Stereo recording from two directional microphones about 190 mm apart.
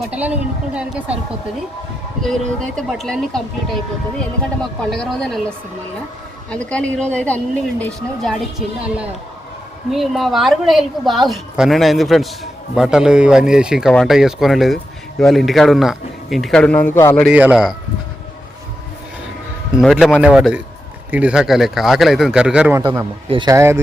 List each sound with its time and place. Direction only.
0.1 s a woman's voice: 5° right (ahead or behind)
2.7 s speech: centre (ahead or behind)
4.9 s speech: centre (ahead or behind)
17.2 s speech: 5° right (ahead or behind)
19.8 s speech: centre (ahead or behind)
22.8 s a man's voice: 25° right (ahead or behind)